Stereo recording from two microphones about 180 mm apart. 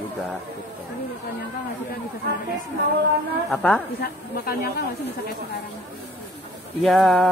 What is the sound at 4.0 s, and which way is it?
Speech, 55° left (ahead or behind).